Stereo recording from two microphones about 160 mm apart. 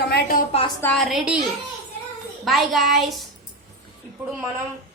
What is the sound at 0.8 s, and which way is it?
Speech, 5° left (ahead or behind).